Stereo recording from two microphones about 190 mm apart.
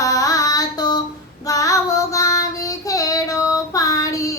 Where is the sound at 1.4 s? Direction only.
15° left (ahead or behind).